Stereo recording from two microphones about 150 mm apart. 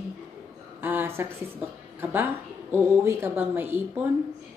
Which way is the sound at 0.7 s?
15° right (ahead or behind).